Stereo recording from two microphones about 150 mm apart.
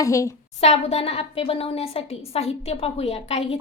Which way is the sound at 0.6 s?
45° left (ahead or behind).